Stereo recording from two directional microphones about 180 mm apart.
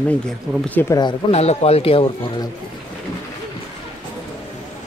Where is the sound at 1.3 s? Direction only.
35° left (ahead or behind).